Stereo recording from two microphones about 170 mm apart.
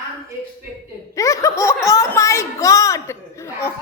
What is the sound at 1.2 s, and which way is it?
Speech, 20° left (ahead or behind).